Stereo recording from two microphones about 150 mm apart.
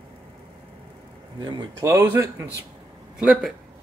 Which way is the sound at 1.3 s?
30° right (ahead or behind).